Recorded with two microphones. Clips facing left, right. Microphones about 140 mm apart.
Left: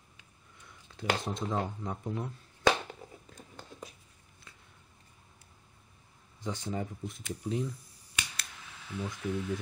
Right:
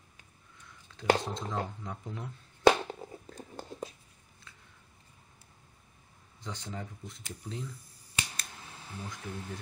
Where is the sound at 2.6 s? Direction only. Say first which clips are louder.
Right 5 dB; 30° right (ahead or behind).